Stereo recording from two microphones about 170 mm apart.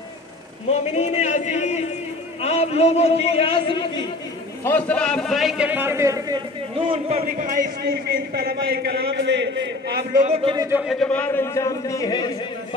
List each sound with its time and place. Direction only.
0.7 s a man's voice: 40° left (ahead or behind)
4.6 s a man's voice: 10° left (ahead or behind); by 10.2 s 70° right (ahead or behind)
10.2 s speech: 40° right (ahead or behind)
10.5 s a man's voice: 20° right (ahead or behind)
10.8 s a man's voice: centre (ahead or behind); by 12.3 s 20° left (ahead or behind)